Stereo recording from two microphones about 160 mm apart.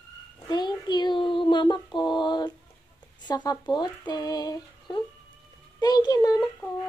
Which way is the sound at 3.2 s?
25° left (ahead or behind).